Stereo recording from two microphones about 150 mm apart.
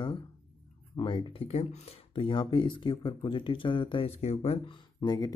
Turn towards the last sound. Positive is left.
turn(degrees=25)  # may be behind; listen again after turning